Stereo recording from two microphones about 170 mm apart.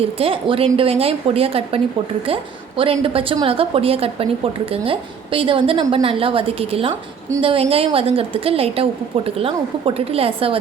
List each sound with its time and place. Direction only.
0.0 s a woman's voice: 35° right (ahead or behind)